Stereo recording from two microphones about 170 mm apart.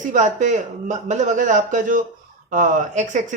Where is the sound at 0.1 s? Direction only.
45° right (ahead or behind).